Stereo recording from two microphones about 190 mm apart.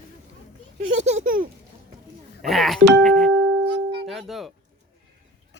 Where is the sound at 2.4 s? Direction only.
Centre (ahead or behind).